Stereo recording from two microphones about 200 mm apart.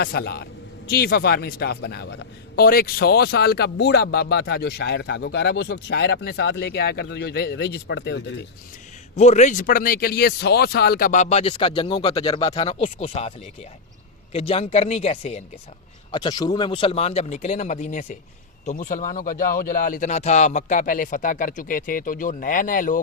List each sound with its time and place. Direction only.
0.0 s speech: 50° left (ahead or behind)
9.1 s speech: 35° left (ahead or behind)
11.7 s speech: 20° left (ahead or behind)
12.5 s speech: 30° left (ahead or behind)
16.1 s speech: 20° left (ahead or behind); by 23.0 s 40° left (ahead or behind)